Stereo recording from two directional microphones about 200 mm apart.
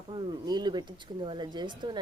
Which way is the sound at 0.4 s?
20° right (ahead or behind).